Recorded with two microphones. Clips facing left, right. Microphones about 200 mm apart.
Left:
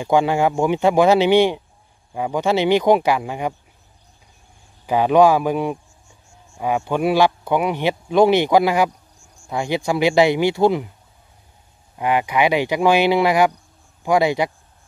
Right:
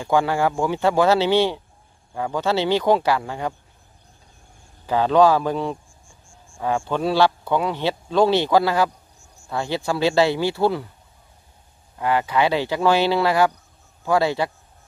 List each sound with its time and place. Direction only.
0.0 s speech: 15° left (ahead or behind)
4.8 s speech: 15° left (ahead or behind)
6.9 s speech: 15° left (ahead or behind)
12.0 s speech: 15° left (ahead or behind)